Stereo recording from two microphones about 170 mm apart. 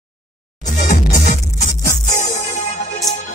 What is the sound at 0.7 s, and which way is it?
Music, 45° left (ahead or behind).